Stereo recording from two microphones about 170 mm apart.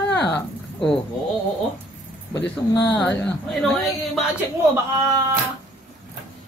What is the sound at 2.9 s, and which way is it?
A man's voice, 10° left (ahead or behind).